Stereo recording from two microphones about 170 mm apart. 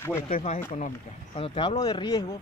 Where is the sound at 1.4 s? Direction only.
30° left (ahead or behind).